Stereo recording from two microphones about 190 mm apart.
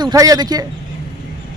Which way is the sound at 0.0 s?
20° right (ahead or behind).